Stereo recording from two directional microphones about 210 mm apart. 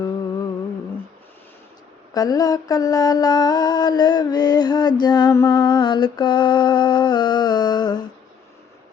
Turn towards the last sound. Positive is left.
turn(degrees=20)  # may be behind; listen again after turning